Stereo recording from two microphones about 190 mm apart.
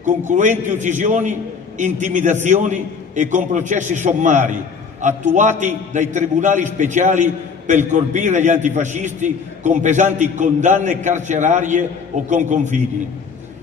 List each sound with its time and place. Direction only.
0.0 s a man's voice: 40° right (ahead or behind)